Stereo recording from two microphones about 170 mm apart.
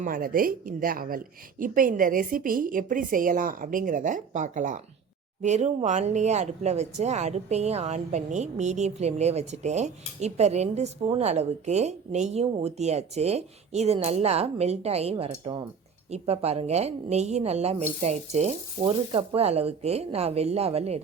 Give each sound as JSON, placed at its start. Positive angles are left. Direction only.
{"t": 0.0, "sound": "a woman's voice", "side_deg": -55}